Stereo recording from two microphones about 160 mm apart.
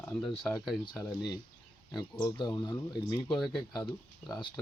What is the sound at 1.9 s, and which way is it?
Speech, 25° left (ahead or behind).